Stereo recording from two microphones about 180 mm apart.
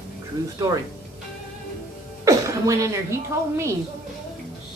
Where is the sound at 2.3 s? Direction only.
15° right (ahead or behind).